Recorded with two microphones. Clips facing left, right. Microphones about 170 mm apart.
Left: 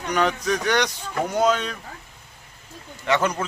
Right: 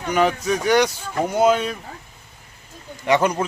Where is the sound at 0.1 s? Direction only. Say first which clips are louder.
Right 3 dB; 5° right (ahead or behind).